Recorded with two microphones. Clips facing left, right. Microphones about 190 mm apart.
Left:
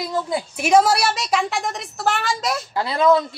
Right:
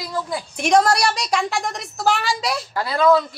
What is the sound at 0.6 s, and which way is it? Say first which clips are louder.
A woman's voice: even; 5° left (ahead or behind).